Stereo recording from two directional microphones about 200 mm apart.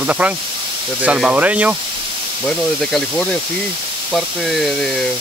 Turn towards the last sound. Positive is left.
turn(degrees=0)  # may be behind; listen again after turning